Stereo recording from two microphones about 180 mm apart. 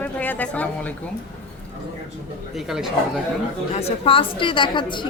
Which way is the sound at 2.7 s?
Centre (ahead or behind).